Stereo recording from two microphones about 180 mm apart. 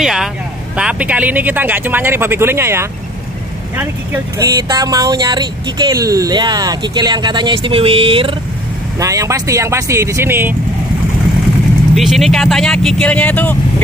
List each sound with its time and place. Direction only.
0.0 s speech: 5° right (ahead or behind); by 8.4 s 30° right (ahead or behind)
9.0 s speech: 15° right (ahead or behind)
11.9 s speech: centre (ahead or behind)